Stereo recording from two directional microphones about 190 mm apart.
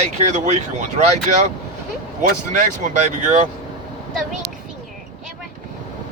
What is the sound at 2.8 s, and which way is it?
Speech, 40° right (ahead or behind).